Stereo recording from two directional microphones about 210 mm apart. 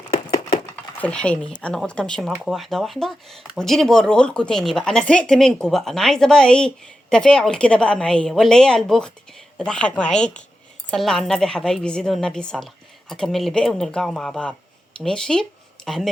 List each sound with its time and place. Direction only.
1.0 s speech: 5° left (ahead or behind)